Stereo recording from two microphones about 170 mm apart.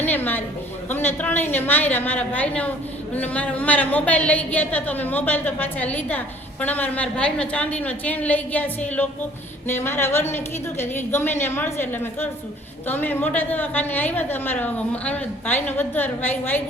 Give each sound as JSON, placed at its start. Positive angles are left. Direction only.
{"t": 0.0, "sound": "a woman's voice", "side_deg": 10}